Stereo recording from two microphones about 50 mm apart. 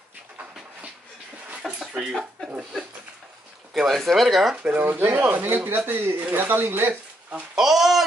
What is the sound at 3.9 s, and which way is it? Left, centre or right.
Speech, centre.